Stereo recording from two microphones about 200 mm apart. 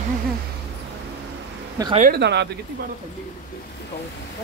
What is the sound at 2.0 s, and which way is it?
Speech, 55° right (ahead or behind).